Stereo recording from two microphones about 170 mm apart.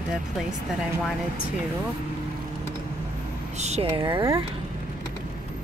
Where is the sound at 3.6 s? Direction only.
40° right (ahead or behind); by 4.4 s 20° right (ahead or behind).